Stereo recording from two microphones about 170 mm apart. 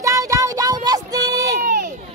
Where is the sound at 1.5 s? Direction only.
65° right (ahead or behind).